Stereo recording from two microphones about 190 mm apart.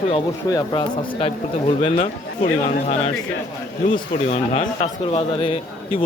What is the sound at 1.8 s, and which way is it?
A man's voice, 40° left (ahead or behind).